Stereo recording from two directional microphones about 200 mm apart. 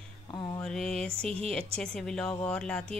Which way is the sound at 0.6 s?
Centre (ahead or behind).